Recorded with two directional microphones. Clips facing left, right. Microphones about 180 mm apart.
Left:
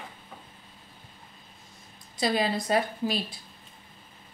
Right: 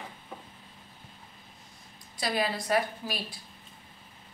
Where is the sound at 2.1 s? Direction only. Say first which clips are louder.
Left 4 dB; 25° left (ahead or behind).